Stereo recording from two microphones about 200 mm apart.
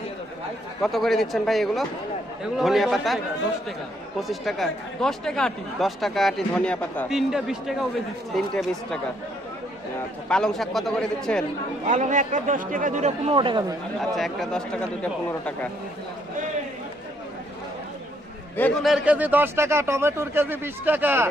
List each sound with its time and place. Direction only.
0.8 s speech: centre (ahead or behind)
4.2 s speech: centre (ahead or behind)
10.2 s speech: 5° left (ahead or behind)
11.9 s speech: 40° right (ahead or behind); by 13.7 s 20° right (ahead or behind)
14.2 s speech: centre (ahead or behind)
18.5 s a man's voice: 5° left (ahead or behind)